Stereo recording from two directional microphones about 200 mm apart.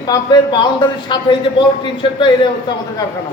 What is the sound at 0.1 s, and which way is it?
A man's voice, 20° left (ahead or behind).